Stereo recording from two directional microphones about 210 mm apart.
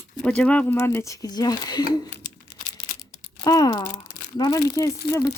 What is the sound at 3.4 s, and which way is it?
Speech, 15° left (ahead or behind).